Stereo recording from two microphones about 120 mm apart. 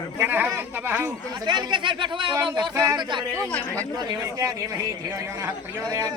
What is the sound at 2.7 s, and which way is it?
Speech, 30° right (ahead or behind).